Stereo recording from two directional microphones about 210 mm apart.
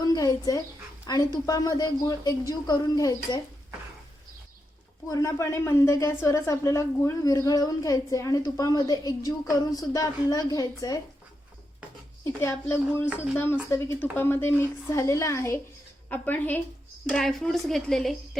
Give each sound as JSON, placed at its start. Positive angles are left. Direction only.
{"t": 0.0, "sound": "a sound", "side_deg": 20}
{"t": 1.0, "sound": "a woman's voice", "side_deg": 20}
{"t": 5.0, "sound": "a woman's voice", "side_deg": 15}
{"t": 12.2, "sound": "a woman's voice", "side_deg": 15}